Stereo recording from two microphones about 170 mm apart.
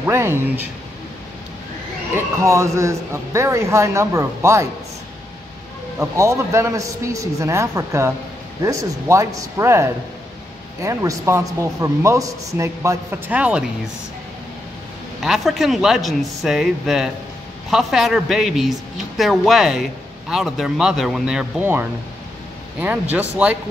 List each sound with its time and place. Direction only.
0.0 s speech: 15° right (ahead or behind)
2.1 s speech: 15° right (ahead or behind)
5.9 s speech: 20° right (ahead or behind)
15.2 s speech: centre (ahead or behind)